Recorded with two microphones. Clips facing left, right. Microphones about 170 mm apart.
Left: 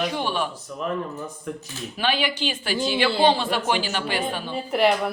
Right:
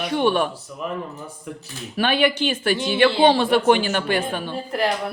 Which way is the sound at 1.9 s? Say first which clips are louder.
Right 5 dB; 55° right (ahead or behind).